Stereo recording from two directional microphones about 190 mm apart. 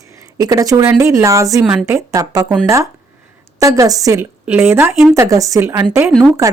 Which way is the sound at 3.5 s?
15° right (ahead or behind).